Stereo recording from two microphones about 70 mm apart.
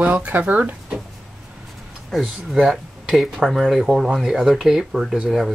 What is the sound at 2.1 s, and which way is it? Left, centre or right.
Speech, centre.